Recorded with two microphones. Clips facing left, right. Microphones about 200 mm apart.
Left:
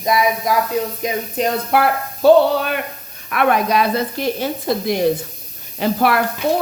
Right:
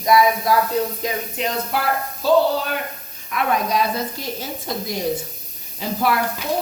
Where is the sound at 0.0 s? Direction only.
20° left (ahead or behind).